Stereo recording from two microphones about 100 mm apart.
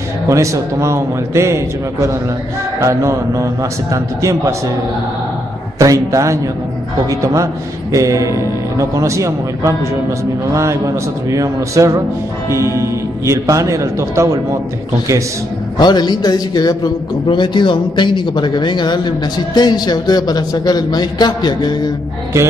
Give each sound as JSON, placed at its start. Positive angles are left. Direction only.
{"t": 0.3, "sound": "a man's voice", "side_deg": -30}
{"t": 5.8, "sound": "a man's voice", "side_deg": -35}
{"t": 7.9, "sound": "a man's voice", "side_deg": -35}
{"t": 13.2, "sound": "a man's voice", "side_deg": -30}
{"t": 15.8, "sound": "a man's voice", "side_deg": 45}